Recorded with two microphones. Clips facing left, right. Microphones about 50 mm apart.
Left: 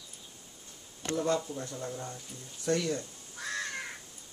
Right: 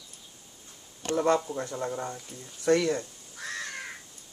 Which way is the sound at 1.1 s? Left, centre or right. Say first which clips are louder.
Right 5 dB; right.